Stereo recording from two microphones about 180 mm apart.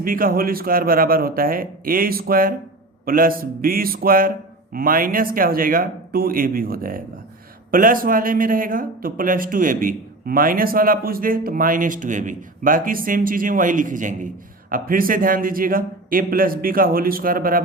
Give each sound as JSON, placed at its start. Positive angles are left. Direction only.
{"t": 0.0, "sound": "a man's voice", "side_deg": -50}